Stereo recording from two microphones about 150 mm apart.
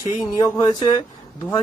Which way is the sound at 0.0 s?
25° left (ahead or behind).